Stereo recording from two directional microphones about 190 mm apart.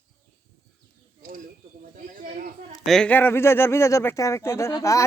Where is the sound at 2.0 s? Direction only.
45° right (ahead or behind).